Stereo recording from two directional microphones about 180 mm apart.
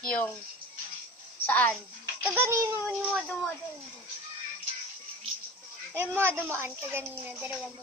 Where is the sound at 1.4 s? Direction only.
10° left (ahead or behind).